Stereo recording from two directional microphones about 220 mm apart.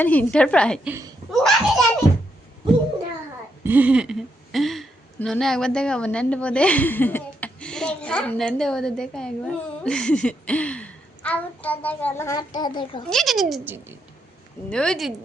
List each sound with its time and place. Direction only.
0.0 s speech: 5° left (ahead or behind)
0.9 s speech: 15° right (ahead or behind)
1.3 s a sound: centre (ahead or behind)
3.6 s a child's voice: 10° right (ahead or behind); by 13.0 s 20° left (ahead or behind)
13.1 s speech: centre (ahead or behind)
14.7 s speech: 5° left (ahead or behind)